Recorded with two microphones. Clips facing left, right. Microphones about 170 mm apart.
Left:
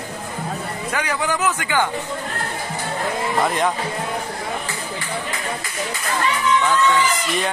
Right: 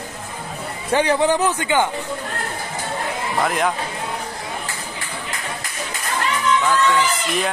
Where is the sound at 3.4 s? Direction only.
Centre (ahead or behind).